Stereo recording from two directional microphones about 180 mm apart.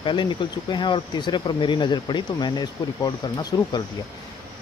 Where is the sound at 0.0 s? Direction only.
25° left (ahead or behind).